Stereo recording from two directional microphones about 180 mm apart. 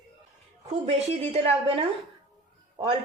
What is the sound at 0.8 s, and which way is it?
A woman's voice, 35° right (ahead or behind).